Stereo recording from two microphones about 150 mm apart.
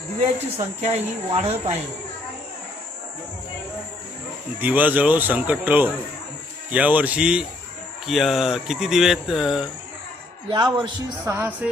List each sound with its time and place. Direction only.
0.5 s speech: 45° right (ahead or behind)
4.6 s speech: 10° right (ahead or behind)
10.5 s a man's voice: 30° right (ahead or behind)
11.3 s speech: 15° right (ahead or behind)